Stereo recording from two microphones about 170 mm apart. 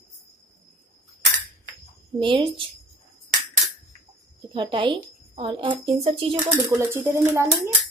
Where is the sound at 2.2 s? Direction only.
30° right (ahead or behind).